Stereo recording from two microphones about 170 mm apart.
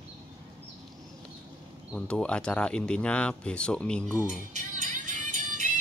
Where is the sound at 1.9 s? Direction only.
5° left (ahead or behind).